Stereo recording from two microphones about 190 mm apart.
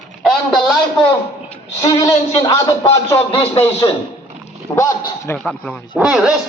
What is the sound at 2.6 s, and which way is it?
A man's voice, 15° left (ahead or behind).